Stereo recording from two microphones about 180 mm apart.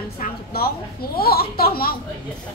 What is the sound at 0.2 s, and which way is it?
A woman's voice, 55° left (ahead or behind).